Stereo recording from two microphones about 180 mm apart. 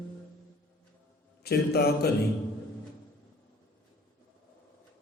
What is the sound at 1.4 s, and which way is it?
Speech, 60° left (ahead or behind).